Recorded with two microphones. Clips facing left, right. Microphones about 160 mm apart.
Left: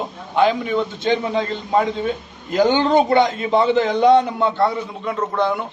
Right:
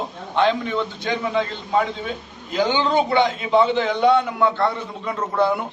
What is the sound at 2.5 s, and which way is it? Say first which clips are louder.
A man's voice: left 4 dB; 45° left (ahead or behind).